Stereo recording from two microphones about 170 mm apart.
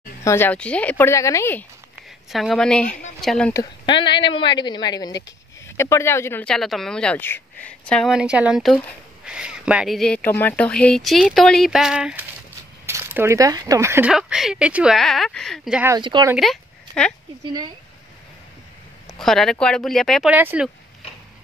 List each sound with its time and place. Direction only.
0.2 s speech: 15° left (ahead or behind)
2.3 s speech: centre (ahead or behind)
3.5 s a woman's voice: 30° left (ahead or behind); by 14.1 s 15° right (ahead or behind)
14.1 s speech: 5° right (ahead or behind)
16.0 s speech: 30° right (ahead or behind)
17.5 s speech: 25° right (ahead or behind)
19.1 s speech: 5° left (ahead or behind)